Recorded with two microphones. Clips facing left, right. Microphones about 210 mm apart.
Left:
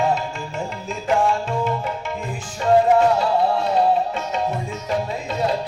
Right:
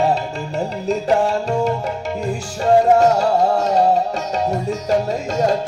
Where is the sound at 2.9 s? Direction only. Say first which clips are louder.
Right 3 dB; 45° right (ahead or behind).